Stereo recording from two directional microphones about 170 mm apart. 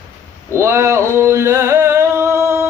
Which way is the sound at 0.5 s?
15° right (ahead or behind).